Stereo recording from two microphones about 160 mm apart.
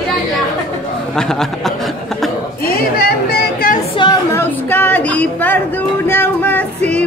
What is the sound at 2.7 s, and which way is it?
Speech, 70° left (ahead or behind).